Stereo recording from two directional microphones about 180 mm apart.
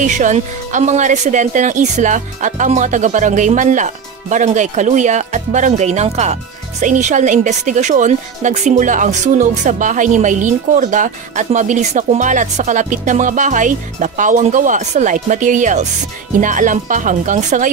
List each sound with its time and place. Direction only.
0.0 s a woman's voice: 45° right (ahead or behind)